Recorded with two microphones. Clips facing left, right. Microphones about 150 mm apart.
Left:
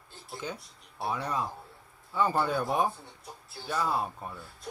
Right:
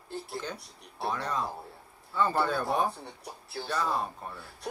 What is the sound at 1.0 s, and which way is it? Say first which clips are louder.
Speech: even; 10° left (ahead or behind).